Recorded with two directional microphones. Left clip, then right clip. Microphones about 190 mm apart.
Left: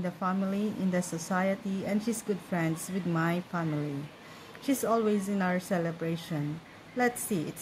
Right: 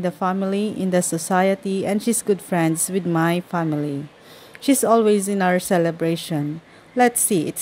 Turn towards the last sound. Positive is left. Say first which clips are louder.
# right 11 dB
turn(degrees=-45)  # may be behind; listen again after turning